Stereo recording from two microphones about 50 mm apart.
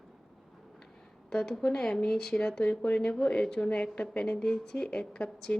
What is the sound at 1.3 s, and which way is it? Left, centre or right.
A woman's voice, centre.